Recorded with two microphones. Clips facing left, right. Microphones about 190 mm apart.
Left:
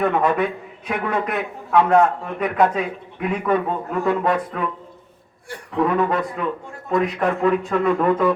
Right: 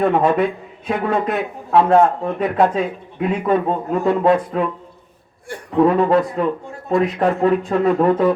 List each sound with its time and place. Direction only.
0.0 s a man's voice: 30° right (ahead or behind)
5.7 s a man's voice: 30° right (ahead or behind)